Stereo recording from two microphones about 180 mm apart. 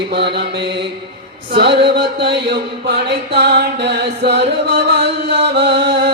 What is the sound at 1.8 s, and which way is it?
Music, 70° right (ahead or behind).